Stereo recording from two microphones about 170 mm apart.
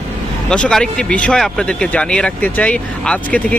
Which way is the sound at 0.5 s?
5° left (ahead or behind).